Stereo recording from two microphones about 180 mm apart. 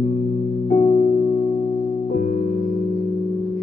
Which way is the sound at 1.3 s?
15° left (ahead or behind).